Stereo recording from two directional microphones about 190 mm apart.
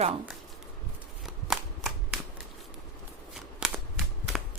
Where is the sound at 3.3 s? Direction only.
Centre (ahead or behind).